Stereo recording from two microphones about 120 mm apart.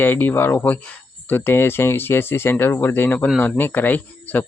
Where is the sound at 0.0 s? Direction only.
15° left (ahead or behind).